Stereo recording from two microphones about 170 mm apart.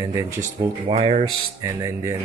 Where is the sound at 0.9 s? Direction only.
35° right (ahead or behind).